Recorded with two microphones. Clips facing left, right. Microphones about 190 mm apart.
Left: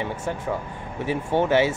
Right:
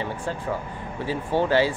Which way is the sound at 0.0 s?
15° left (ahead or behind).